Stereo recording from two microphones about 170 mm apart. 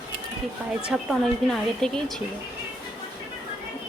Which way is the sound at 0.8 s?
Centre (ahead or behind).